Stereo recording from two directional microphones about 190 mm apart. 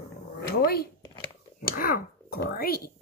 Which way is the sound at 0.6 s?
50° left (ahead or behind).